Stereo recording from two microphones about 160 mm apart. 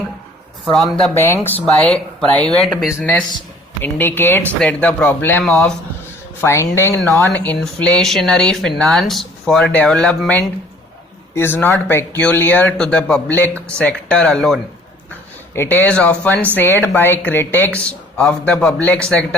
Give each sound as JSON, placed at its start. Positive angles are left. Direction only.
{"t": 0.6, "sound": "speech", "side_deg": 0}
{"t": 1.1, "sound": "speech", "side_deg": 15}
{"t": 1.6, "sound": "speech", "side_deg": 5}
{"t": 6.4, "sound": "speech", "side_deg": 20}
{"t": 7.0, "sound": "speech", "side_deg": -20}
{"t": 7.3, "sound": "speech", "side_deg": 10}
{"t": 15.5, "sound": "speech", "side_deg": 15}